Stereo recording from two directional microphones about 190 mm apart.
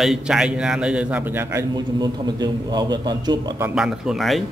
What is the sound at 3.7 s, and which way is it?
Speech, 5° right (ahead or behind).